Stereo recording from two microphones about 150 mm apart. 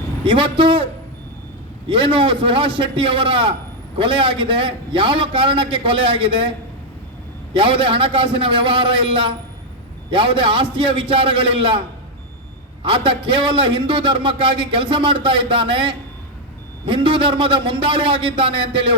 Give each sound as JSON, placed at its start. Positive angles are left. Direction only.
{"t": 0.3, "sound": "a man's voice", "side_deg": -35}
{"t": 1.9, "sound": "a man's voice", "side_deg": -35}
{"t": 7.5, "sound": "a man's voice", "side_deg": -35}
{"t": 12.8, "sound": "a man's voice", "side_deg": -35}